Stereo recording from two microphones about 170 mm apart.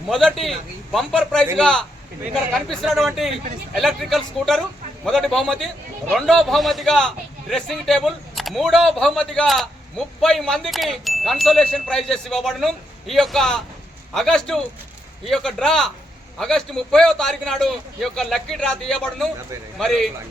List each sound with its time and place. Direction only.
0.9 s speech: centre (ahead or behind)